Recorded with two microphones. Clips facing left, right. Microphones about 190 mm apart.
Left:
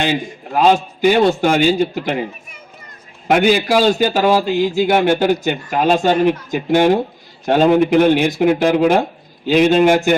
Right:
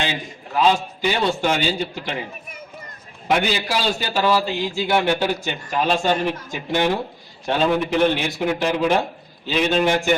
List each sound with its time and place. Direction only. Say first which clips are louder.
0.0 s a man's voice: left 7 dB; 50° left (ahead or behind)
3.2 s a man's voice: left 7 dB; 50° left (ahead or behind)